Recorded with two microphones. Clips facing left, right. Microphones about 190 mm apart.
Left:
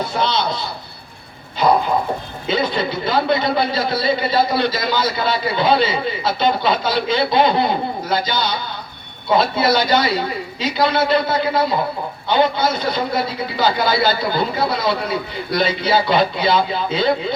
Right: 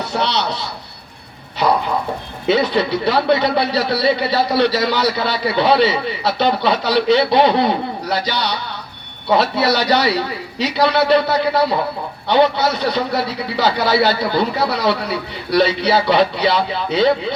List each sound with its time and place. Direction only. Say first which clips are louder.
0.1 s speech: even; 75° right (ahead or behind)
2.5 s a man's voice: right 4 dB; 70° right (ahead or behind)